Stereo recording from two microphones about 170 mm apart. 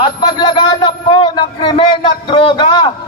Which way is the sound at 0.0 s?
25° left (ahead or behind).